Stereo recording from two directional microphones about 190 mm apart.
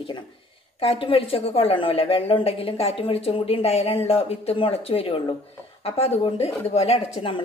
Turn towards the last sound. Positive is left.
turn(degrees=30)  # may be behind; listen again after turning